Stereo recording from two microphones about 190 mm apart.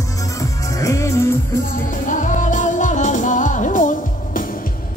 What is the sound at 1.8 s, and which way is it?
Music, 45° left (ahead or behind).